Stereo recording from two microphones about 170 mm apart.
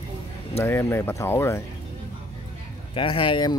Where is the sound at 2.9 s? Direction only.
30° left (ahead or behind).